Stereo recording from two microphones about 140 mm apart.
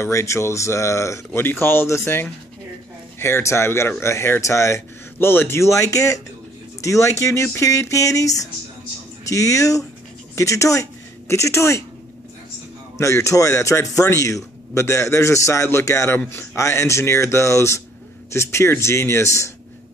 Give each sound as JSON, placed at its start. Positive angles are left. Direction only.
{"t": 0.0, "sound": "a man's voice", "side_deg": 20}
{"t": 12.9, "sound": "a man's voice", "side_deg": 20}